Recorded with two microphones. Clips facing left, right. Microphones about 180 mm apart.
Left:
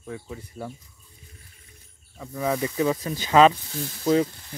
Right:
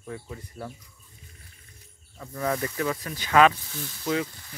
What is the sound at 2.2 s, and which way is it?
Speech, 10° left (ahead or behind).